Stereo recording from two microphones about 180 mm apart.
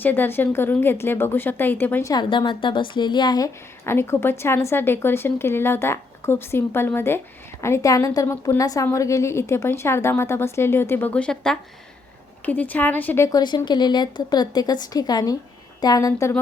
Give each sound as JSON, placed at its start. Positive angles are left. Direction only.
{"t": 0.0, "sound": "a woman's voice", "side_deg": 10}